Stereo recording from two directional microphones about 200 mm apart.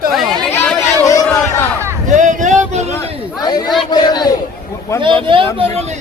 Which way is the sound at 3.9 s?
20° left (ahead or behind).